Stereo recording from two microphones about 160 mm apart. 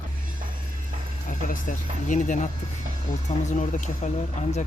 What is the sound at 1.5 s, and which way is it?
Speech, 55° left (ahead or behind).